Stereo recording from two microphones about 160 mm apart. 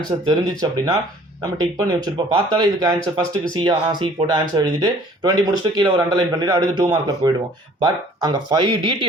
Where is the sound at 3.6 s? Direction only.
30° right (ahead or behind).